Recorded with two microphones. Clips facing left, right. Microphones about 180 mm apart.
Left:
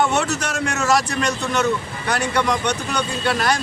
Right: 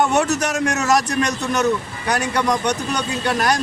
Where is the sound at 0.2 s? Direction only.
40° right (ahead or behind).